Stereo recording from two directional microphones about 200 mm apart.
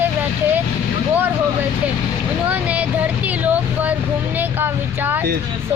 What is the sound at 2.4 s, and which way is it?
Speech, 5° right (ahead or behind).